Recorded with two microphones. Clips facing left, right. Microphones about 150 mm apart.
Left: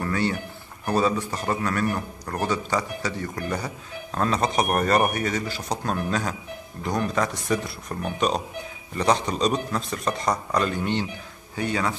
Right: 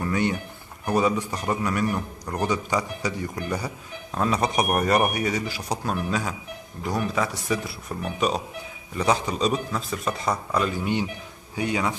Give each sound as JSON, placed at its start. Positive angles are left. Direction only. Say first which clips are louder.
{"t": 0.0, "sound": "a man's voice", "louder": "right 1 dB", "side_deg": -15}